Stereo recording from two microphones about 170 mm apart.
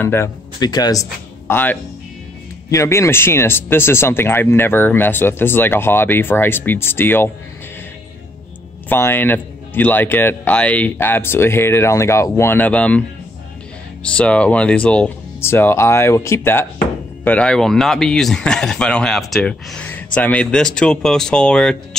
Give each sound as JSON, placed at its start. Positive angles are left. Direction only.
{"t": 0.0, "sound": "speech", "side_deg": 15}
{"t": 0.6, "sound": "speech", "side_deg": 25}
{"t": 1.5, "sound": "speech", "side_deg": 10}
{"t": 8.8, "sound": "speech", "side_deg": 10}
{"t": 14.0, "sound": "speech", "side_deg": 5}